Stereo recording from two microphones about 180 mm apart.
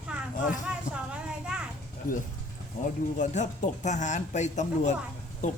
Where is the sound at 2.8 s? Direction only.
45° left (ahead or behind).